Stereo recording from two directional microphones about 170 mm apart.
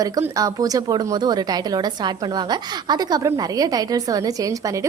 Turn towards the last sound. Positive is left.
turn(degrees=-20)  # may be behind; listen again after turning